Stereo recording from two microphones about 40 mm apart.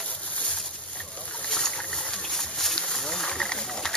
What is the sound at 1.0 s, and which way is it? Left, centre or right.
Boat, left.